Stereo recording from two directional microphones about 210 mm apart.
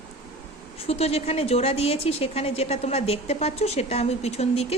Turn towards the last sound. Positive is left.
turn(degrees=30)  # may be behind; listen again after turning